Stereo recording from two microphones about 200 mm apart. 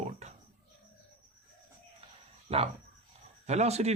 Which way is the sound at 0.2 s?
35° right (ahead or behind).